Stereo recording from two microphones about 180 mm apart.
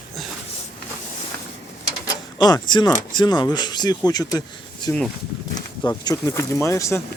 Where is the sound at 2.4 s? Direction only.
25° left (ahead or behind).